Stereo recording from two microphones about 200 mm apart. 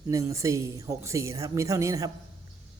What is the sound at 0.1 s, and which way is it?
A woman's voice, 15° right (ahead or behind).